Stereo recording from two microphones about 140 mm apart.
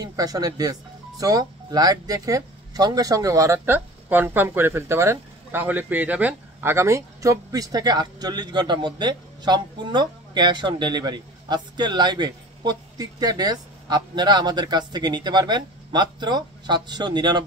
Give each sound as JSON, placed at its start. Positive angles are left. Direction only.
{"t": 0.0, "sound": "speech", "side_deg": -25}